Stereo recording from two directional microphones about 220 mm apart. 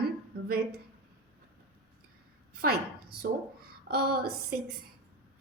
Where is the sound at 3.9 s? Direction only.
40° right (ahead or behind).